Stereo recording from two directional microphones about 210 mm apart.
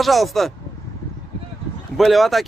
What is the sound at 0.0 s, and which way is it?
Speech, centre (ahead or behind).